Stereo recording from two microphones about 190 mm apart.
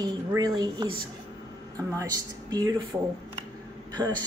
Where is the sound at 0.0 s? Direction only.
20° right (ahead or behind).